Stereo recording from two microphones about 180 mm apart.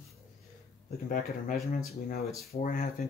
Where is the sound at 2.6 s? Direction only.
50° left (ahead or behind).